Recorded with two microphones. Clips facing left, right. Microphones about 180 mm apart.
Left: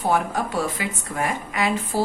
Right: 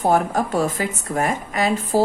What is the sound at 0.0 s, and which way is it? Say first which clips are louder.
A woman's voice: right 4 dB; 45° right (ahead or behind).